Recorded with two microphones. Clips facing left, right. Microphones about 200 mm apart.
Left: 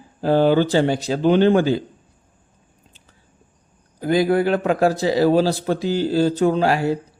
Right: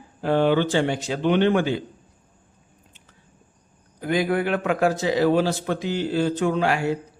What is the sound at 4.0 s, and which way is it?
A man's voice, 35° left (ahead or behind).